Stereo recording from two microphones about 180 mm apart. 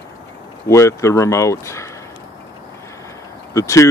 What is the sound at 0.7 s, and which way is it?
Speech, 15° left (ahead or behind).